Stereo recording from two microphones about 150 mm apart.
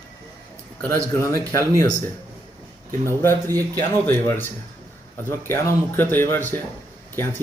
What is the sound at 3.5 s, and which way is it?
Speech, 25° right (ahead or behind).